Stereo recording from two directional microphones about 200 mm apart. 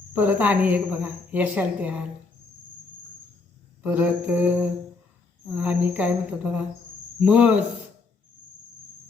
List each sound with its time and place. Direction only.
0.1 s a woman's voice: 10° right (ahead or behind)
3.8 s a woman's voice: 10° right (ahead or behind)